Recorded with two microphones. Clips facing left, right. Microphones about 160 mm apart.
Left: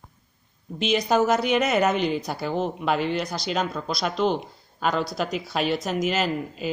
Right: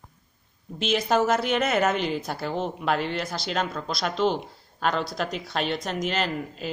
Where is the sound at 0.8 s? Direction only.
Centre (ahead or behind).